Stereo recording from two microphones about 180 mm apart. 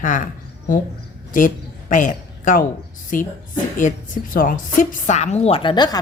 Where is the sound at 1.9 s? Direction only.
45° left (ahead or behind).